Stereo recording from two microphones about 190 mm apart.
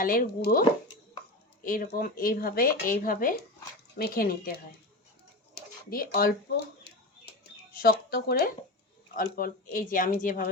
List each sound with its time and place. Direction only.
0.0 s speech: 50° left (ahead or behind)
1.6 s speech: 45° left (ahead or behind)
6.8 s a sound: 55° left (ahead or behind)
9.1 s speech: 50° left (ahead or behind)